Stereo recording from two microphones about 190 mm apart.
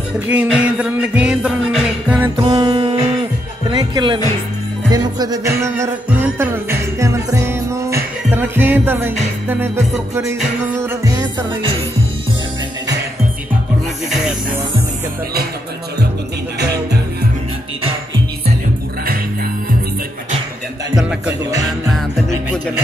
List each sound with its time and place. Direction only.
0.3 s music: 5° right (ahead or behind)
2.3 s music: 25° right (ahead or behind)
16.5 s music: 60° right (ahead or behind)
20.9 s music: centre (ahead or behind)